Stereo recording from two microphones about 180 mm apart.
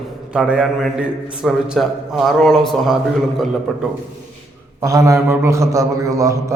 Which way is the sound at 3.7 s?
Centre (ahead or behind).